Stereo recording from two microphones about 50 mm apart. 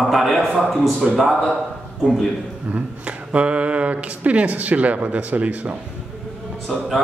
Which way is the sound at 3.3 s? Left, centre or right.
Right.